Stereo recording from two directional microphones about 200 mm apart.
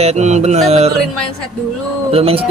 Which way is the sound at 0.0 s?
35° right (ahead or behind).